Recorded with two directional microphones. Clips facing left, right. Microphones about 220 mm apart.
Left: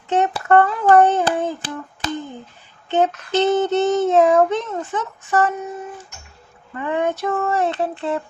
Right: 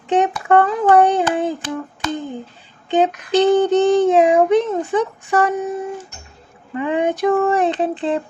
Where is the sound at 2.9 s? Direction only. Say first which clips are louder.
Right 3 dB; 15° right (ahead or behind).